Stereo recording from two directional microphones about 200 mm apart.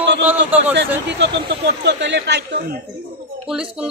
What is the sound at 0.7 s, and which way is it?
Speech, 60° right (ahead or behind).